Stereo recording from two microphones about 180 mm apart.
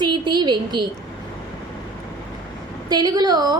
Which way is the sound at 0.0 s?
25° right (ahead or behind).